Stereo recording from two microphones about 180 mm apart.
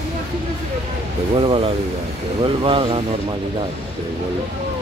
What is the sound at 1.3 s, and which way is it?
Speech, 30° right (ahead or behind).